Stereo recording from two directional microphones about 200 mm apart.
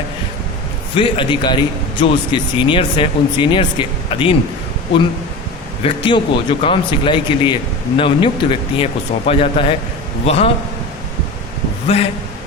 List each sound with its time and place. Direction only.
0.9 s a man's voice: 25° left (ahead or behind)
5.8 s a man's voice: 25° left (ahead or behind)